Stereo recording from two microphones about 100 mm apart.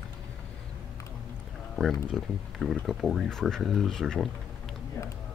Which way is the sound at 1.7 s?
Centre (ahead or behind).